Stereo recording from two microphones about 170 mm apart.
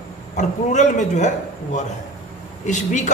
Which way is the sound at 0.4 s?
45° left (ahead or behind).